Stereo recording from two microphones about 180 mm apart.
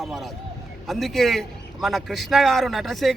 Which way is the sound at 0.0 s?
Centre (ahead or behind).